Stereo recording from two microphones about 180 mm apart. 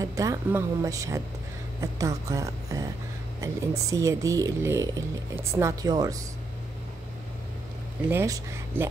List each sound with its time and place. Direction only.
0.0 s speech: 20° right (ahead or behind)
8.1 s speech: 15° right (ahead or behind)